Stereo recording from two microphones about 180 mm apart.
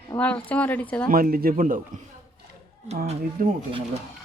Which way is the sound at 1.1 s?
55° right (ahead or behind).